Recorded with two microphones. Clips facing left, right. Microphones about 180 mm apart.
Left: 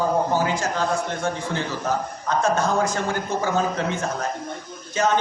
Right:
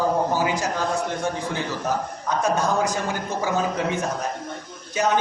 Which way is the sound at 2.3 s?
15° right (ahead or behind).